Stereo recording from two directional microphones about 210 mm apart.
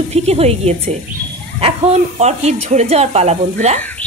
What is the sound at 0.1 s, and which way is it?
Speech, 30° right (ahead or behind).